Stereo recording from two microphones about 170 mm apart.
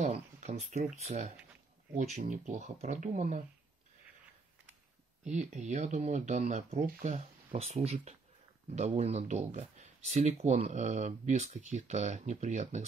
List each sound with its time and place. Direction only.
0.0 s speech: 40° right (ahead or behind)
5.3 s speech: 45° right (ahead or behind)